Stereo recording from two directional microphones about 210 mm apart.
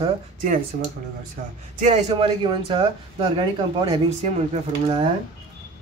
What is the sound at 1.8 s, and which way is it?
Speech, 35° right (ahead or behind).